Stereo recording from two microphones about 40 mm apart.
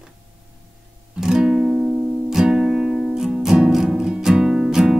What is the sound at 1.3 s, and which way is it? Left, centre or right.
Music, centre.